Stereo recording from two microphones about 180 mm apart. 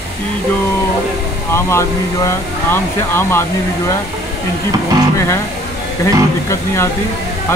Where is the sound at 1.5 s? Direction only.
15° left (ahead or behind).